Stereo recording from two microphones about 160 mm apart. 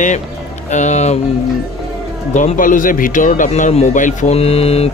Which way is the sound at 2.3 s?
55° left (ahead or behind).